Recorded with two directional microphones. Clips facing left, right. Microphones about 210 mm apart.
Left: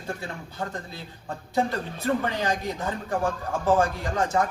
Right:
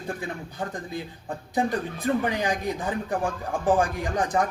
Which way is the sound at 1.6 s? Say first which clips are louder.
Right 1 dB; 15° right (ahead or behind).